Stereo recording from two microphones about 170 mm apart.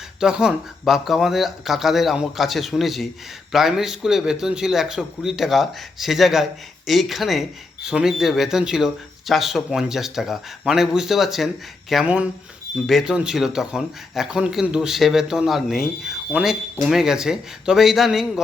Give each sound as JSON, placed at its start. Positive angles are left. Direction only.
{"t": 0.2, "sound": "a man's voice", "side_deg": -5}